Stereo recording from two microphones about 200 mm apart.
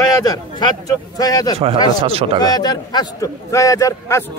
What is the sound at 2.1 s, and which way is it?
Speech, 30° right (ahead or behind).